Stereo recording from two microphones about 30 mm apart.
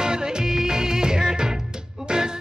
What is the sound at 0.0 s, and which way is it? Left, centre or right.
Music, right.